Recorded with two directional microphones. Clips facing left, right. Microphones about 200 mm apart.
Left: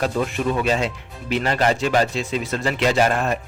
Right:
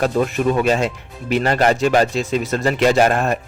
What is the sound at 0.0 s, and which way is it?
A man's voice, 45° right (ahead or behind).